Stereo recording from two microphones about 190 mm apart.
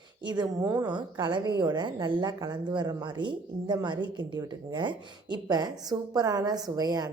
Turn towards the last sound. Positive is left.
turn(degrees=-20)  # may be behind; listen again after turning